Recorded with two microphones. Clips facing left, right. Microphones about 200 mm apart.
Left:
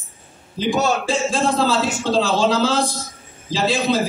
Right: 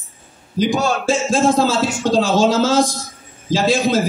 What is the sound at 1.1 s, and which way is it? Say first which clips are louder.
A man's voice: right 4 dB; 45° right (ahead or behind).